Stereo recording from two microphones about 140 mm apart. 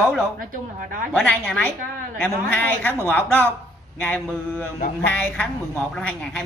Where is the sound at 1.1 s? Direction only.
10° left (ahead or behind).